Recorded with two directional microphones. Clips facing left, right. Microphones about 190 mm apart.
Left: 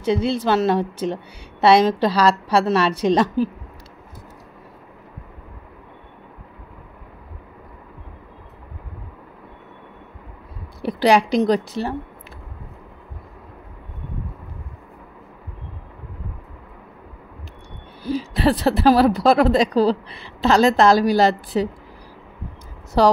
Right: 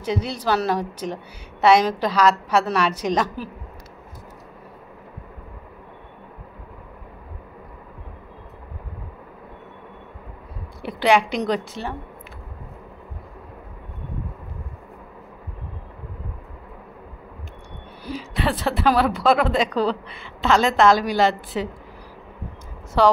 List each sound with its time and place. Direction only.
0.0 s a woman's voice: 30° left (ahead or behind)
10.8 s a woman's voice: 40° left (ahead or behind)
18.0 s speech: 35° left (ahead or behind)
23.0 s speech: 40° left (ahead or behind)